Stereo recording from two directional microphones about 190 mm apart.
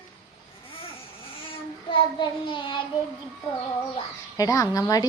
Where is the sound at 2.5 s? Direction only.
25° left (ahead or behind).